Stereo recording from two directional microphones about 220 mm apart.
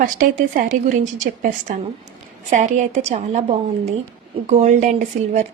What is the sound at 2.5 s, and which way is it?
Speech, 35° right (ahead or behind).